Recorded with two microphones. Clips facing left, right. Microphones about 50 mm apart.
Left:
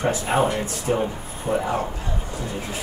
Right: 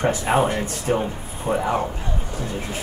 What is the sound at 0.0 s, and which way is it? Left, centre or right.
Speech, right.